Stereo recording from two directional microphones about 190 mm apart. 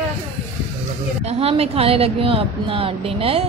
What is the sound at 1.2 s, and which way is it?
A woman's voice, 30° right (ahead or behind).